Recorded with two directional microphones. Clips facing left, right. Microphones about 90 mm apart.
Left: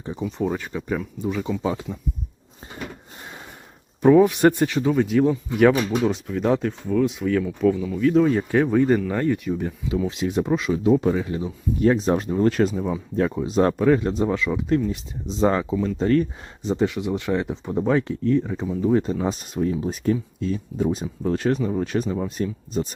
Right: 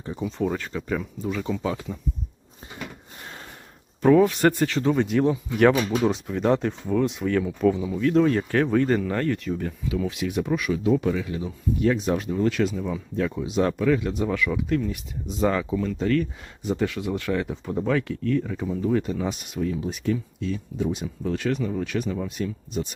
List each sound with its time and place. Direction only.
0.3 s speech: 15° left (ahead or behind)
4.0 s speech: 15° left (ahead or behind)
4.8 s speech: centre (ahead or behind)
7.4 s speech: 10° right (ahead or behind)
7.9 s speech: centre (ahead or behind)
10.1 s speech: 30° left (ahead or behind)
15.7 s speech: 10° left (ahead or behind)
16.0 s speech: 35° left (ahead or behind)